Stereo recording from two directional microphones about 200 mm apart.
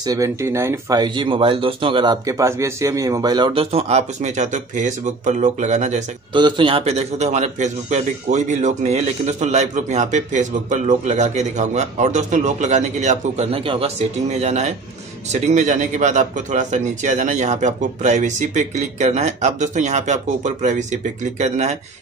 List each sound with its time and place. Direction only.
0.0 s speech: 15° right (ahead or behind); by 6.0 s 35° right (ahead or behind)
6.3 s a man's voice: 25° right (ahead or behind)